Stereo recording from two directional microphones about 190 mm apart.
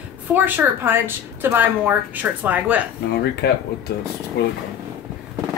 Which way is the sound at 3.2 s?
60° left (ahead or behind).